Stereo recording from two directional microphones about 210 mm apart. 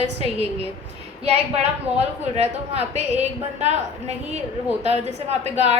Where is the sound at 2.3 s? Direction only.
30° right (ahead or behind).